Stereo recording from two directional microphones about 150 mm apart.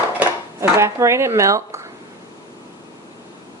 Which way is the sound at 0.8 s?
20° right (ahead or behind).